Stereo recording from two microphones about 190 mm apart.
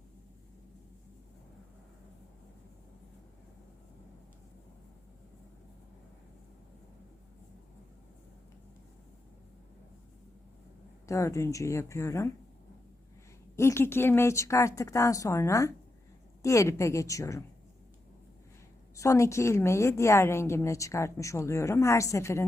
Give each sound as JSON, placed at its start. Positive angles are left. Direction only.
{"t": 11.1, "sound": "a woman's voice", "side_deg": 15}
{"t": 13.6, "sound": "a woman's voice", "side_deg": 15}
{"t": 18.9, "sound": "a woman's voice", "side_deg": 15}